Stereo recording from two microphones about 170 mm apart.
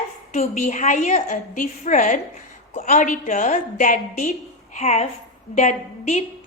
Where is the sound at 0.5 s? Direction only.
45° left (ahead or behind).